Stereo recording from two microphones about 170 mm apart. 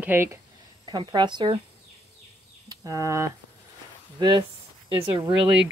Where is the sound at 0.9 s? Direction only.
25° right (ahead or behind).